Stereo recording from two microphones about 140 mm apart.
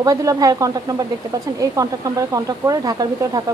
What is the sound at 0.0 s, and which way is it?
Speech, 25° right (ahead or behind).